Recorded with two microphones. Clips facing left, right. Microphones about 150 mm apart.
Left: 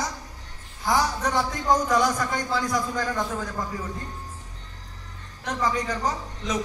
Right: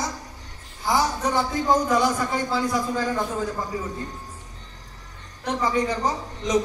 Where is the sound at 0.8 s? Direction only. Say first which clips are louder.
Right 1 dB; 10° right (ahead or behind).